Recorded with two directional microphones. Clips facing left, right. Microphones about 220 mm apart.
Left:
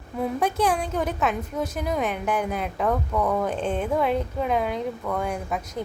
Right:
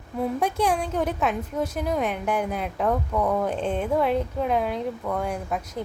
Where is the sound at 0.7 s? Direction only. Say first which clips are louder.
Right 1 dB; 5° left (ahead or behind).